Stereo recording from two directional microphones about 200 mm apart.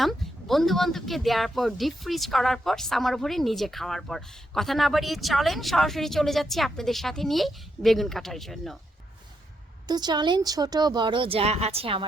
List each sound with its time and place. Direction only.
0.0 s speech: centre (ahead or behind)
9.8 s speech: 20° right (ahead or behind)